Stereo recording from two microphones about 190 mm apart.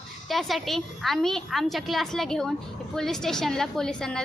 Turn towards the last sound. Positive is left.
turn(degrees=5)  # may be behind; listen again after turning